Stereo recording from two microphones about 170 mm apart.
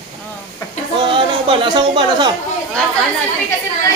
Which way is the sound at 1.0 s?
30° right (ahead or behind).